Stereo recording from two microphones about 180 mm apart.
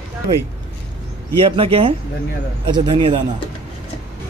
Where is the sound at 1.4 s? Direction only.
30° right (ahead or behind).